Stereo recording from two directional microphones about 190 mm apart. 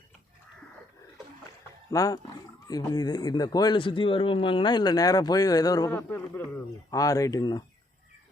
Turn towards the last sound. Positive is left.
turn(degrees=20)  # may be behind; listen again after turning